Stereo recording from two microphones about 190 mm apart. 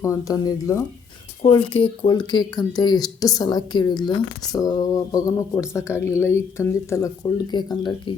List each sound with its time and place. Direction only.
0.0 s speech: 15° left (ahead or behind)